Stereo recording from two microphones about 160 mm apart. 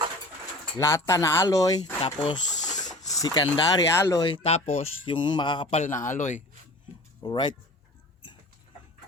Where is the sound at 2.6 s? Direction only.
50° left (ahead or behind).